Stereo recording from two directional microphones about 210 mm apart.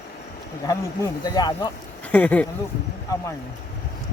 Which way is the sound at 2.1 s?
5° left (ahead or behind).